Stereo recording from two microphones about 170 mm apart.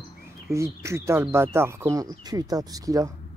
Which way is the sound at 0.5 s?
15° right (ahead or behind).